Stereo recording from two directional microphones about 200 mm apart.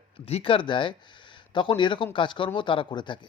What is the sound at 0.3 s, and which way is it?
A man's voice, 30° left (ahead or behind).